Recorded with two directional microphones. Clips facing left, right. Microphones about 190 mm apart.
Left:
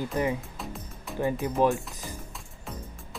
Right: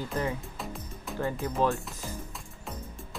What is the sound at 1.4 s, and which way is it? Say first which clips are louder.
Speech: left 3 dB; 15° left (ahead or behind).